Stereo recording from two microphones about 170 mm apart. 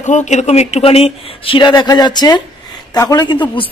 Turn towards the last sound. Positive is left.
turn(degrees=30)  # may be behind; listen again after turning